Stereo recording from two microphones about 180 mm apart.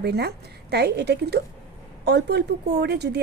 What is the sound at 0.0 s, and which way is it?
Speech, 65° right (ahead or behind).